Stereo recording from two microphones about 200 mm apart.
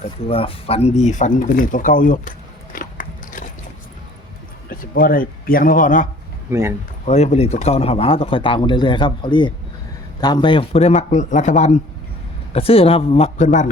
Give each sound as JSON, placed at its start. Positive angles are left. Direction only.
{"t": 0.0, "sound": "speech", "side_deg": 30}
{"t": 2.7, "sound": "biting", "side_deg": 40}
{"t": 4.7, "sound": "speech", "side_deg": 45}
{"t": 6.5, "sound": "speech", "side_deg": -15}
{"t": 7.0, "sound": "speech", "side_deg": 35}